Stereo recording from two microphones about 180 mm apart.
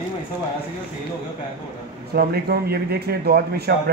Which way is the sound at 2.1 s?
60° right (ahead or behind).